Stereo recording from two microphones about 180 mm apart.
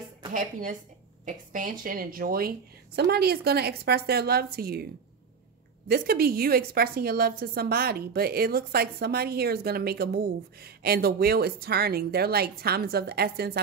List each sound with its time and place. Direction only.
0.3 s a woman's voice: 50° right (ahead or behind)
5.9 s a woman's voice: 55° right (ahead or behind)